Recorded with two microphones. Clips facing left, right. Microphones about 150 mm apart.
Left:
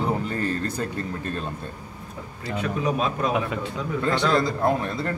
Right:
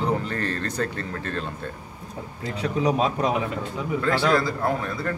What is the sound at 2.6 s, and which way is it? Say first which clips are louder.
Speech: right 2 dB; 25° right (ahead or behind).